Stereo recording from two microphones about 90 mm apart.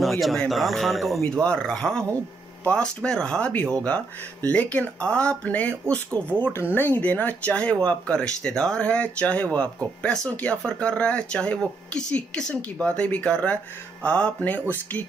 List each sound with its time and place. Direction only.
0.0 s a man's voice: centre (ahead or behind); by 15.0 s 20° left (ahead or behind)